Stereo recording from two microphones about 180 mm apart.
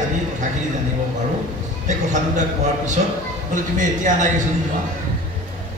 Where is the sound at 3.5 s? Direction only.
45° right (ahead or behind).